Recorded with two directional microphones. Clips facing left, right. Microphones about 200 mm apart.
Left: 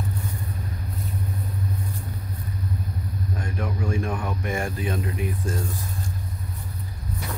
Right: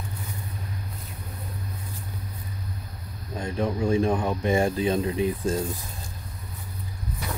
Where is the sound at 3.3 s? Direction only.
25° right (ahead or behind).